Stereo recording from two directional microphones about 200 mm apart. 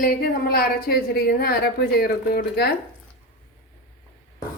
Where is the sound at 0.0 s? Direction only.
50° left (ahead or behind).